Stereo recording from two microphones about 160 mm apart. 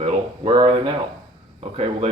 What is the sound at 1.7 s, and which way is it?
Speech, 40° right (ahead or behind).